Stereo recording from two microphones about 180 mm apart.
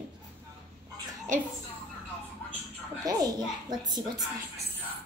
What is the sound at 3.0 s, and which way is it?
Speech, 20° right (ahead or behind).